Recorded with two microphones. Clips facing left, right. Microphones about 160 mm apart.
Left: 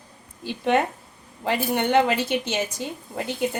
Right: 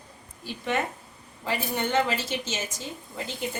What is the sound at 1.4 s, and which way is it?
A woman's voice, 65° left (ahead or behind).